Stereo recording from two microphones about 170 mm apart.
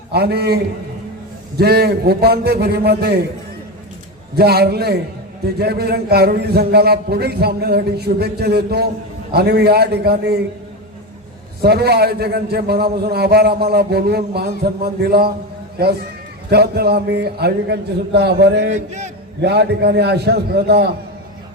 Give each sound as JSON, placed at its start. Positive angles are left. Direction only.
{"t": 0.1, "sound": "a man's voice", "side_deg": -70}
{"t": 4.4, "sound": "a man's voice", "side_deg": -70}
{"t": 11.6, "sound": "a man's voice", "side_deg": -70}
{"t": 16.5, "sound": "a man's voice", "side_deg": -70}
{"t": 18.7, "sound": "a sound", "side_deg": -45}
{"t": 19.4, "sound": "a man's voice", "side_deg": -75}